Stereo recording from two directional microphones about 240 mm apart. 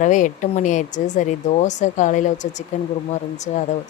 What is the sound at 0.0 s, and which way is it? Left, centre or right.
Speech, left.